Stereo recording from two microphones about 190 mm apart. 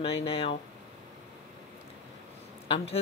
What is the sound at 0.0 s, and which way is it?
Speech, 30° left (ahead or behind).